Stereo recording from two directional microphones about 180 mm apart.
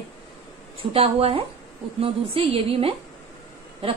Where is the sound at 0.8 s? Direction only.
30° right (ahead or behind).